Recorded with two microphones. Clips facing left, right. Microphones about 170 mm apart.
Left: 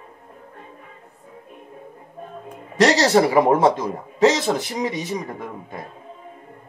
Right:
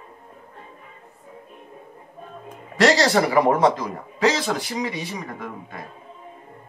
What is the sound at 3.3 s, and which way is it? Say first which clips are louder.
Speech: left 2 dB; 25° left (ahead or behind).